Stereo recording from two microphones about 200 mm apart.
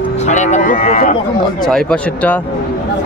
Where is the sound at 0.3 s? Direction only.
35° left (ahead or behind).